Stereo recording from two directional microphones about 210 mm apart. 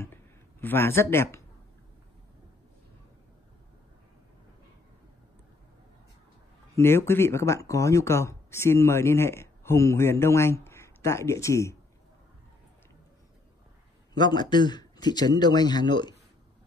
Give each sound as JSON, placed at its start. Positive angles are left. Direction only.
{"t": 0.0, "sound": "a sound", "side_deg": 10}
{"t": 6.7, "sound": "speech", "side_deg": 10}
{"t": 14.1, "sound": "speech", "side_deg": 20}